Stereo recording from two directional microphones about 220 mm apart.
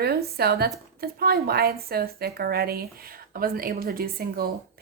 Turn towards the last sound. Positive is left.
turn(degrees=-45)  # may be behind; listen again after turning